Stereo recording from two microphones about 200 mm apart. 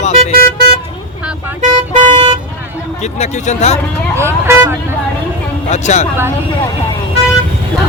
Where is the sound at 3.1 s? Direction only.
35° left (ahead or behind).